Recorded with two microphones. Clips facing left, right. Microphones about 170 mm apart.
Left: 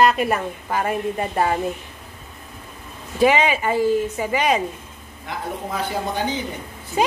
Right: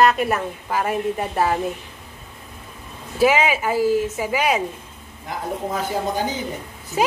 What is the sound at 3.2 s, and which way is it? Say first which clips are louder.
A woman's voice: even; 5° right (ahead or behind).